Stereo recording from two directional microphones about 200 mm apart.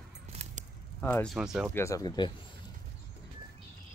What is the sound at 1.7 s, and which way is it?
Speech, 15° left (ahead or behind).